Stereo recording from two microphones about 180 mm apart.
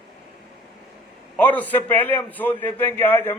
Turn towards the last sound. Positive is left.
turn(degrees=10)  # may be behind; listen again after turning